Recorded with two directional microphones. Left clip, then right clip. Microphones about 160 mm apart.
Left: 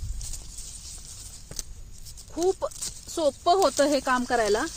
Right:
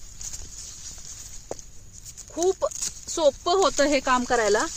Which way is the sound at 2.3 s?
15° right (ahead or behind).